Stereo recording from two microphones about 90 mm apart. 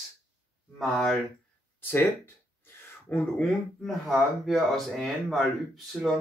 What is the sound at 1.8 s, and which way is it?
Speech, 25° left (ahead or behind).